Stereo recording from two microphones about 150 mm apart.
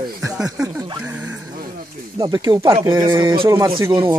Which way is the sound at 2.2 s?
25° right (ahead or behind).